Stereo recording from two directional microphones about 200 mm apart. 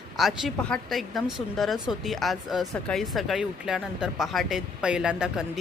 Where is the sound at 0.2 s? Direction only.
Centre (ahead or behind).